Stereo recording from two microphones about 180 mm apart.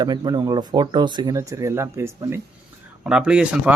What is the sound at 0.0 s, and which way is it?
Speech, 25° right (ahead or behind).